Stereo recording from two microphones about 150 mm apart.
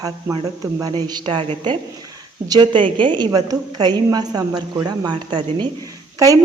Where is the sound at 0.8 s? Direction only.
30° right (ahead or behind).